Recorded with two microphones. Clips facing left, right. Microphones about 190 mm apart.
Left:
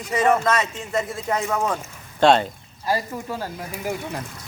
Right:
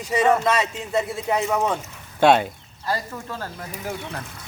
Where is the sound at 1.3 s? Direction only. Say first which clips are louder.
Right 1 dB; 15° right (ahead or behind).